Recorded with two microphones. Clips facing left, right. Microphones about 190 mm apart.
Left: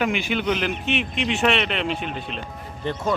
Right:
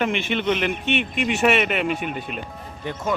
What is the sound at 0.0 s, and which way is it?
A man's voice, centre (ahead or behind).